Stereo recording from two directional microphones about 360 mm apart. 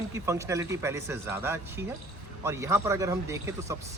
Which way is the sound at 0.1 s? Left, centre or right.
Centre.